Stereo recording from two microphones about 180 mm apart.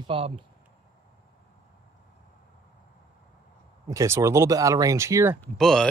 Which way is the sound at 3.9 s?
15° right (ahead or behind).